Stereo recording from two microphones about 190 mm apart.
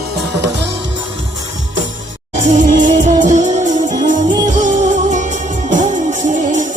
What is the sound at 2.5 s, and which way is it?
Music, 40° right (ahead or behind).